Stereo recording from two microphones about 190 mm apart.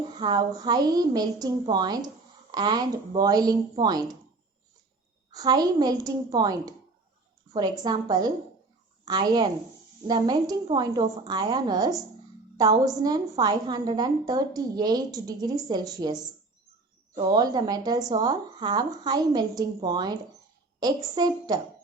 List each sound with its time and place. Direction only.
0.2 s a woman's voice: 20° right (ahead or behind)
5.3 s a woman's voice: 20° right (ahead or behind)